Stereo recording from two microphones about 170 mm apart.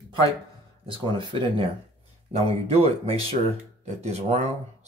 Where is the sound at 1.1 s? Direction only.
30° right (ahead or behind).